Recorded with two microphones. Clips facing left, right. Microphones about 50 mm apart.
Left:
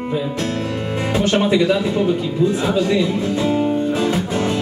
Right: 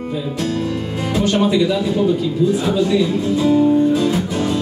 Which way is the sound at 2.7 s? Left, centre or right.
Left.